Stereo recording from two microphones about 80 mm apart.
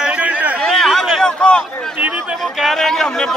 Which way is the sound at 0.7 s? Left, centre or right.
Centre.